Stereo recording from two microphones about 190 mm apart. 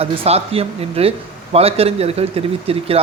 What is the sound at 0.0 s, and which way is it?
Speech, 30° right (ahead or behind).